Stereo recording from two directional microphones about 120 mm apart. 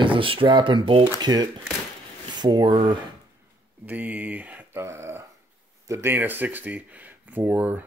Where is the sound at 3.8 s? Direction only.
15° right (ahead or behind).